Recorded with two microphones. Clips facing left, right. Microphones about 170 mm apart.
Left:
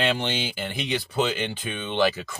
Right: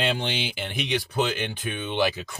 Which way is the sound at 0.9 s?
15° right (ahead or behind).